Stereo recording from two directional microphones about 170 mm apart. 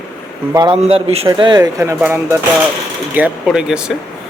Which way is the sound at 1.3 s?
25° right (ahead or behind).